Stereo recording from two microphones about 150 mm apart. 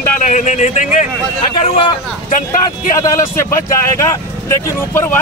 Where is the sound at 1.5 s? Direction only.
40° left (ahead or behind).